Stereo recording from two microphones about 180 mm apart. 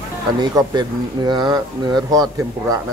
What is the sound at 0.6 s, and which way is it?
Speech, 20° right (ahead or behind).